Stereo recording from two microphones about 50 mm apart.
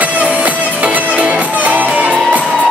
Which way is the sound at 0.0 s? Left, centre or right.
Right.